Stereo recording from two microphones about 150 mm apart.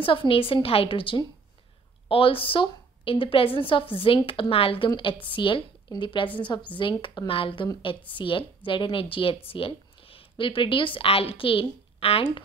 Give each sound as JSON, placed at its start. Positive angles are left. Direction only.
{"t": 0.0, "sound": "a woman's voice", "side_deg": 35}